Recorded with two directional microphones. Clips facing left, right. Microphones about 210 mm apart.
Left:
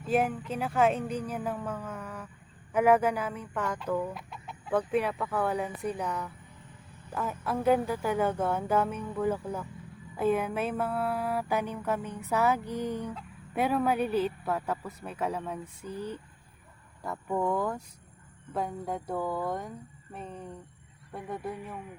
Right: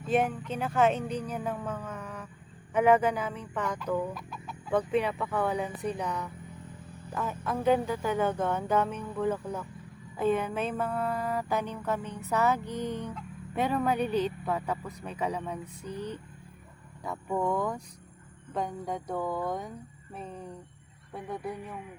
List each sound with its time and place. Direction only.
0.1 s mantra: 5° left (ahead or behind)
2.7 s speech: 5° left (ahead or behind)
4.1 s chicken: 25° left (ahead or behind)
4.9 s speech: 5° left (ahead or behind)
7.1 s mantra: 5° left (ahead or behind)
13.5 s speech: 5° left (ahead or behind)